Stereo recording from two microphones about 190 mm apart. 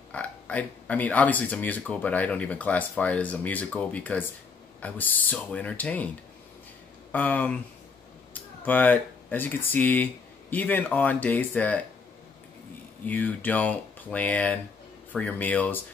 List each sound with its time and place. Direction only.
0.1 s speech: 5° left (ahead or behind)
7.1 s speech: 10° left (ahead or behind)
13.0 s speech: 10° left (ahead or behind)